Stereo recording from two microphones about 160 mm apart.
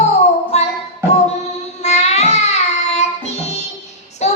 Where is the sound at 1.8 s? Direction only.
45° left (ahead or behind).